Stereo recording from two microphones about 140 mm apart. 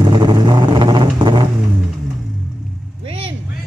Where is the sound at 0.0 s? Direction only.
35° right (ahead or behind).